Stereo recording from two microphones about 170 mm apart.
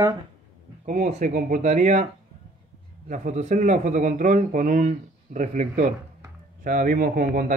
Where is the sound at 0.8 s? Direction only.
45° right (ahead or behind).